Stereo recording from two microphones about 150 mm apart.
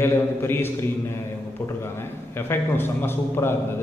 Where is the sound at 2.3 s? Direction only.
15° left (ahead or behind).